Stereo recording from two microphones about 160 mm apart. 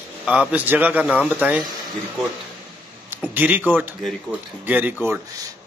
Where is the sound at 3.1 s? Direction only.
10° right (ahead or behind).